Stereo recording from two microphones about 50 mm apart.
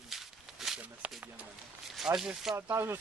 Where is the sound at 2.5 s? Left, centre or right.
Right.